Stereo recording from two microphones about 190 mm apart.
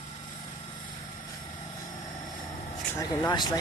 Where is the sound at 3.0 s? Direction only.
20° left (ahead or behind).